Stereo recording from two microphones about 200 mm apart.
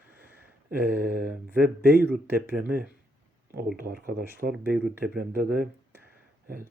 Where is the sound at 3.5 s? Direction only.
50° right (ahead or behind).